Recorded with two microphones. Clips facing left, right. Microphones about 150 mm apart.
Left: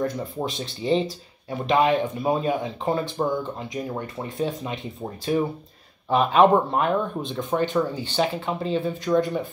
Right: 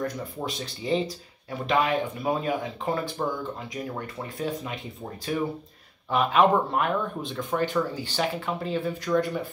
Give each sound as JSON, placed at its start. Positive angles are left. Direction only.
{"t": 0.0, "sound": "speech", "side_deg": 25}
{"t": 6.0, "sound": "speech", "side_deg": 30}